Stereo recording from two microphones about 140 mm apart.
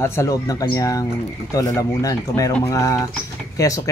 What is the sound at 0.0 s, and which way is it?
Speech, 20° left (ahead or behind).